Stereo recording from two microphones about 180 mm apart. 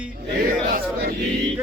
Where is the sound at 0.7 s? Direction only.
55° right (ahead or behind).